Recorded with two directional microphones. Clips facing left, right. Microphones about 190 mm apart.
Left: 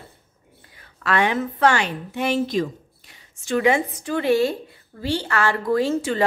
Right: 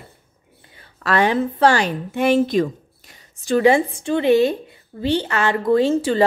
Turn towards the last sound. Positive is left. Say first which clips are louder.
# right 4 dB
turn(degrees=-30)  # may be behind; listen again after turning